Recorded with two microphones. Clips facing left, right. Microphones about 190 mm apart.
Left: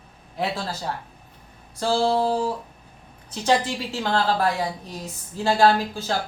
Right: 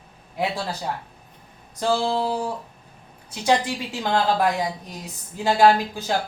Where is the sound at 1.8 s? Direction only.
15° right (ahead or behind).